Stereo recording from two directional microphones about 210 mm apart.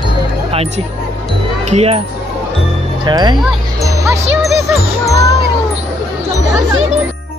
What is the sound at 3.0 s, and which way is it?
Music, 20° right (ahead or behind).